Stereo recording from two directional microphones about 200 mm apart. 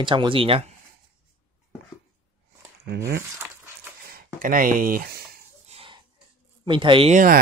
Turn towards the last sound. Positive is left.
turn(degrees=-45)  # may be behind; listen again after turning